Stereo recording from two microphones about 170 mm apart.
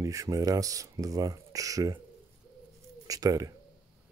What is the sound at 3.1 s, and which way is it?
Speech, 20° right (ahead or behind).